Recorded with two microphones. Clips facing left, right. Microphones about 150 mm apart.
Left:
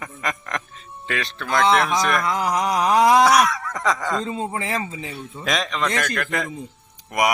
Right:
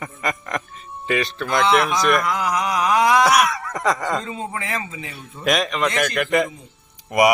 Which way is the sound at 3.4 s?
5° right (ahead or behind).